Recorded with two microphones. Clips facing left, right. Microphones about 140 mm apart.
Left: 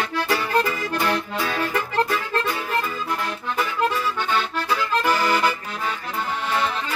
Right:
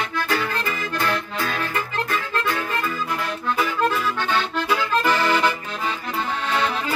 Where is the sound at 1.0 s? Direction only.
30° left (ahead or behind).